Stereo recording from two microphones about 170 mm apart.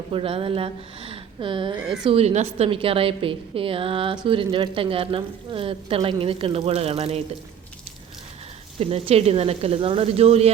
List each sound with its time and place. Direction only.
0.1 s speech: 35° right (ahead or behind)
1.8 s a woman's voice: 5° right (ahead or behind)
2.0 s a woman's voice: 35° right (ahead or behind)
8.8 s a woman's voice: 35° right (ahead or behind)